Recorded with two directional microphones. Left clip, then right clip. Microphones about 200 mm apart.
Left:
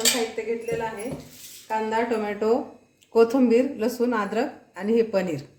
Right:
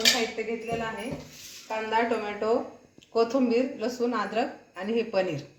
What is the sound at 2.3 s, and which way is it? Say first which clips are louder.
A woman's voice: left 3 dB; 45° left (ahead or behind).